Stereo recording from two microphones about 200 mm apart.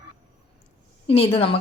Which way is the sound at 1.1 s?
30° left (ahead or behind).